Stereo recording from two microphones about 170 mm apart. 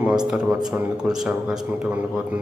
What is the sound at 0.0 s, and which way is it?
Speech, 5° right (ahead or behind).